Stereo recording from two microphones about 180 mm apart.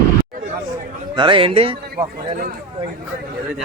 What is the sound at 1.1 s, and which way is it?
Speech, 30° right (ahead or behind).